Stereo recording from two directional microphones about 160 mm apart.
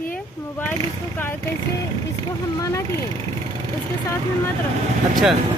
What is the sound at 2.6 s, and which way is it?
Speech, 20° left (ahead or behind).